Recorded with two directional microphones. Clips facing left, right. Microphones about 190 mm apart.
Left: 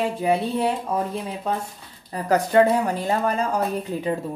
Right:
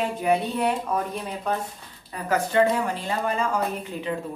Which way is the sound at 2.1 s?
35° left (ahead or behind).